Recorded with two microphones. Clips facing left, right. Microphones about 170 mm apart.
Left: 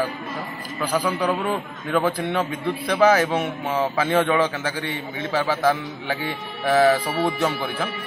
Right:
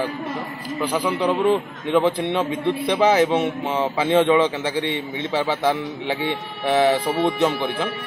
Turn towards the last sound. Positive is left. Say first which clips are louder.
# right 3 dB
turn(degrees=-25)  # may be behind; listen again after turning